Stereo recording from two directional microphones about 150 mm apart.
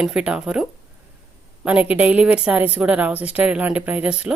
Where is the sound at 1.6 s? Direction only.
10° right (ahead or behind).